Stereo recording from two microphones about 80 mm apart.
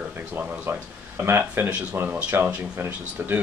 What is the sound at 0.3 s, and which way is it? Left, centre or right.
Speech, right.